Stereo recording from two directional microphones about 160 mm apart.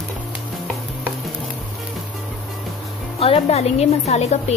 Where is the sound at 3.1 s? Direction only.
35° left (ahead or behind).